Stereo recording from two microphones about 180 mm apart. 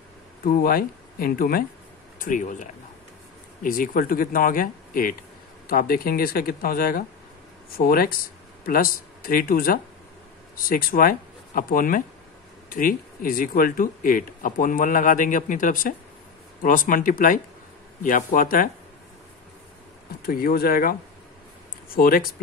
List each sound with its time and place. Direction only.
0.5 s speech: 55° left (ahead or behind)
20.2 s speech: 55° left (ahead or behind)